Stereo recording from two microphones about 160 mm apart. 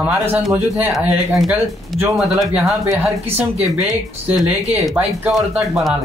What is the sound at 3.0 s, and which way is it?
Speech, 15° right (ahead or behind).